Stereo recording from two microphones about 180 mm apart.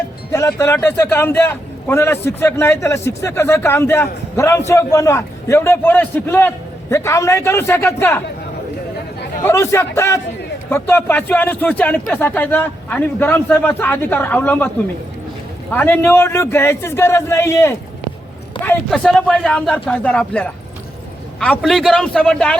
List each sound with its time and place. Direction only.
0.3 s a man's voice: 15° left (ahead or behind)
9.4 s a man's voice: 15° left (ahead or behind)
15.7 s a man's voice: 10° left (ahead or behind)